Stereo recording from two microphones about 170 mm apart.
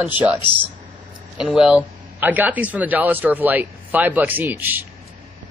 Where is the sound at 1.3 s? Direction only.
5° right (ahead or behind).